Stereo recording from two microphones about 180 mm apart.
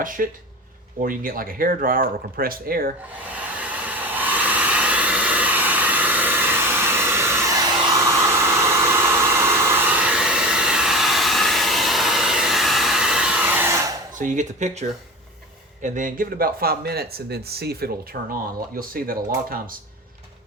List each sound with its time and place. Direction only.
0.0 s speech: 50° right (ahead or behind)
3.6 s hair dryer: 10° right (ahead or behind)
14.2 s speech: 45° right (ahead or behind)